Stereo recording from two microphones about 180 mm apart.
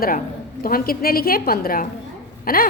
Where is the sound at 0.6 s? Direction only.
55° left (ahead or behind).